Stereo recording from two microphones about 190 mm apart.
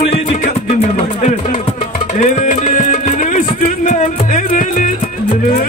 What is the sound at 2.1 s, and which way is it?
Music, 40° left (ahead or behind).